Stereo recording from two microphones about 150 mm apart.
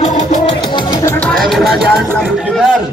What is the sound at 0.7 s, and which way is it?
Music, 25° left (ahead or behind).